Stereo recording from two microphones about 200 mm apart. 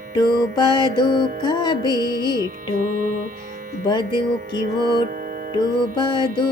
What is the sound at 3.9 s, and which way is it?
Music, 25° left (ahead or behind).